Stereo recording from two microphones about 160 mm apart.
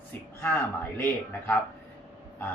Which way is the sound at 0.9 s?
10° left (ahead or behind).